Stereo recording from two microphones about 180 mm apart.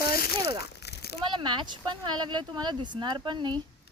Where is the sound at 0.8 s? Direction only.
65° left (ahead or behind).